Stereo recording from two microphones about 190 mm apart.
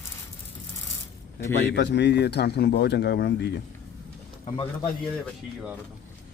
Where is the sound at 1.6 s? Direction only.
65° left (ahead or behind).